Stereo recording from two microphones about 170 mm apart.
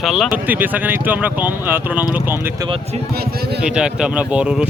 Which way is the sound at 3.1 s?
65° right (ahead or behind).